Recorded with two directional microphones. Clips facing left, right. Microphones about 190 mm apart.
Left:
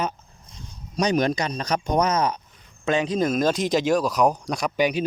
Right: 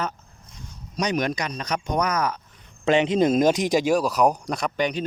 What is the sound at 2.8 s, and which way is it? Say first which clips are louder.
Speech: right 3 dB; 25° right (ahead or behind).